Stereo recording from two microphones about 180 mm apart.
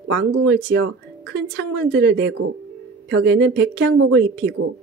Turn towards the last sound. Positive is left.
turn(degrees=-75)  # may be behind; listen again after turning